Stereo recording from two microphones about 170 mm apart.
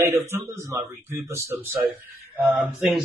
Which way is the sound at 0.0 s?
15° right (ahead or behind).